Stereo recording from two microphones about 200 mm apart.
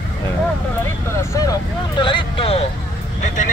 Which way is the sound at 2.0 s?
25° left (ahead or behind).